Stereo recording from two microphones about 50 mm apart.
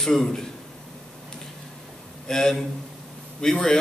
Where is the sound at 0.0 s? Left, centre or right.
Centre.